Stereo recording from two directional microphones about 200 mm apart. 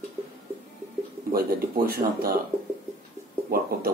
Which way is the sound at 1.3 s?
50° right (ahead or behind).